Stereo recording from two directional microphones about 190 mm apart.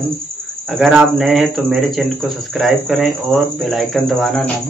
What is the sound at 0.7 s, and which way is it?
Speech, centre (ahead or behind).